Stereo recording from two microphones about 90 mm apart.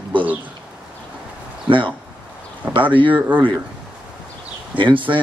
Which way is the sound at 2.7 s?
70° right (ahead or behind).